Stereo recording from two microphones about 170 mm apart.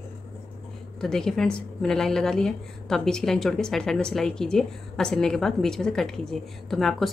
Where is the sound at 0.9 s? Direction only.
5° left (ahead or behind).